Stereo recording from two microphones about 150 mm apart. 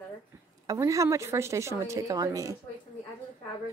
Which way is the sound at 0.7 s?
20° right (ahead or behind).